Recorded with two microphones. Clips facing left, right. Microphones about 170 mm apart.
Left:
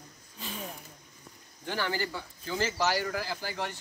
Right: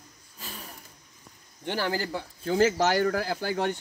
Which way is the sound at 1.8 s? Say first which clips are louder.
Right 3 dB; 40° right (ahead or behind).